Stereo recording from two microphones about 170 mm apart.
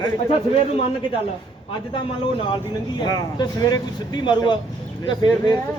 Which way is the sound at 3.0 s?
25° left (ahead or behind).